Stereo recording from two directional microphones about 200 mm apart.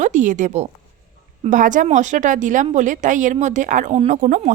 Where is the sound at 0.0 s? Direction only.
40° right (ahead or behind).